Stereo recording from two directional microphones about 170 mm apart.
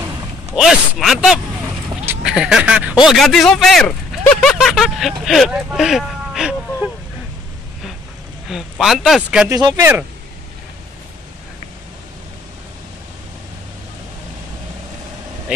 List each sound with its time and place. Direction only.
0.6 s a man's voice: centre (ahead or behind)
8.5 s a man's voice: centre (ahead or behind)
9.5 s speech: 20° right (ahead or behind)